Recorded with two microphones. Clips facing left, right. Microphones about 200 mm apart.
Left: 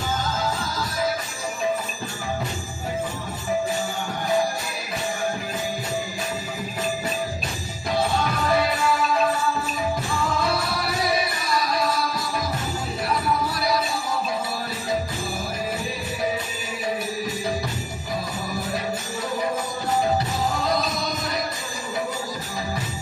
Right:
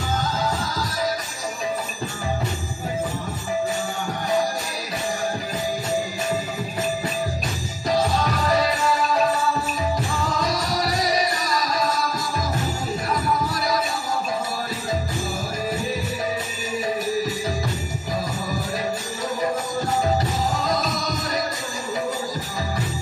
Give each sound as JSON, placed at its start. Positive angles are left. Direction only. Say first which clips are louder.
{"t": 7.9, "sound": "music", "louder": "right 2 dB", "side_deg": -40}
{"t": 10.4, "sound": "music", "louder": "right 1 dB", "side_deg": -40}
{"t": 20.6, "sound": "music", "louder": "even", "side_deg": -45}